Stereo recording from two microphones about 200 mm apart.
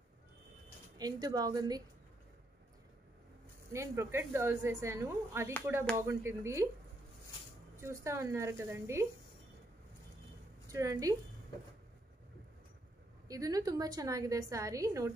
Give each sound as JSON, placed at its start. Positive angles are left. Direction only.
{"t": 0.9, "sound": "a woman's voice", "side_deg": -20}
{"t": 3.7, "sound": "a woman's voice", "side_deg": -15}
{"t": 7.8, "sound": "a woman's voice", "side_deg": -15}
{"t": 10.7, "sound": "a woman's voice", "side_deg": -15}
{"t": 13.3, "sound": "a woman's voice", "side_deg": -15}